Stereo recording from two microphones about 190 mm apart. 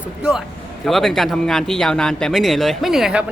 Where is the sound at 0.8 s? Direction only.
Centre (ahead or behind).